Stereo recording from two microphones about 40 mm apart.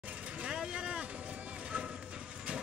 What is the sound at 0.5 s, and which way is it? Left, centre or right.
Vehicle, right.